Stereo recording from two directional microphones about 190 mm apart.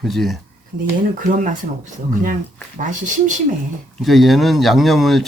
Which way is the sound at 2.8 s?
40° right (ahead or behind).